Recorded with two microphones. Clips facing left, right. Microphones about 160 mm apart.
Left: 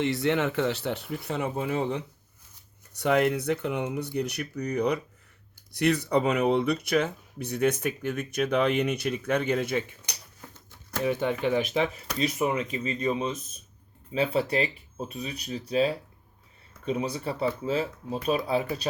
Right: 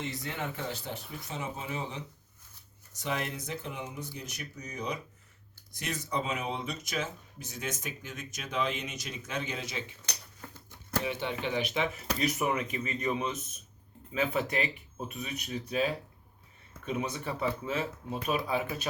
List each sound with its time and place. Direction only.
0.0 s speech: 75° left (ahead or behind); by 9.8 s 55° left (ahead or behind)
11.0 s speech: 45° left (ahead or behind)
12.2 s speech: 25° left (ahead or behind)